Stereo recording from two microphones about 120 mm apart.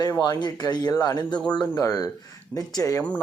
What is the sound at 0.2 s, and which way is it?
Speech, 35° left (ahead or behind).